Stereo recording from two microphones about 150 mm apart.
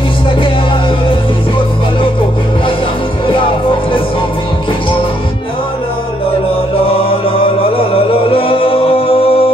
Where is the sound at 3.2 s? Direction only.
35° left (ahead or behind).